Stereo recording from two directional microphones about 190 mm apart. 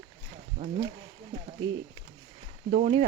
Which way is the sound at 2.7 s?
35° right (ahead or behind).